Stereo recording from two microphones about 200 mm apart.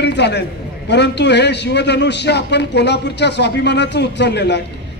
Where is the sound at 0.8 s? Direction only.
60° left (ahead or behind).